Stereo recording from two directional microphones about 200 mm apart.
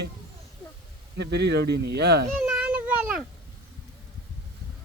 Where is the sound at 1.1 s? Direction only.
60° right (ahead or behind).